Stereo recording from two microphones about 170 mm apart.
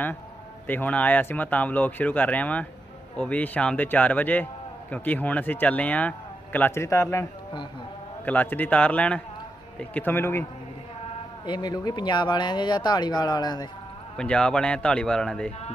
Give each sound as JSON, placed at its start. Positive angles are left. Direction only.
{"t": 0.7, "sound": "speech", "side_deg": 10}
{"t": 11.4, "sound": "speech", "side_deg": 25}
{"t": 14.1, "sound": "a man's voice", "side_deg": 5}